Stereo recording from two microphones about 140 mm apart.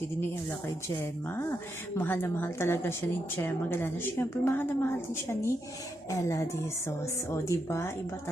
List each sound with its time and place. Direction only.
2.0 s a woman's voice: 15° left (ahead or behind)